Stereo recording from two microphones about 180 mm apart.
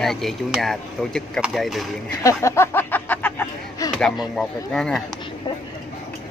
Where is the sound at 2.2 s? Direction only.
15° left (ahead or behind).